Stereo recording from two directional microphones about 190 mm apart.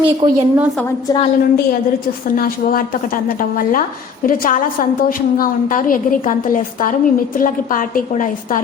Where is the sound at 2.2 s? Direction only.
50° left (ahead or behind).